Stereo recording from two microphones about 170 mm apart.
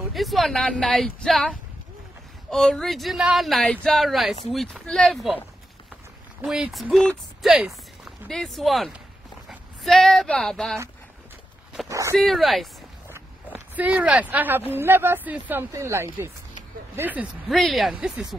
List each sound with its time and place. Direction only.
0.1 s speech: centre (ahead or behind)
6.4 s speech: 5° right (ahead or behind)
11.9 s speech: 20° right (ahead or behind)
12.2 s speech: centre (ahead or behind)
13.1 s a sound: 10° right (ahead or behind)
14.7 s speech: 10° right (ahead or behind)
17.5 s speech: centre (ahead or behind)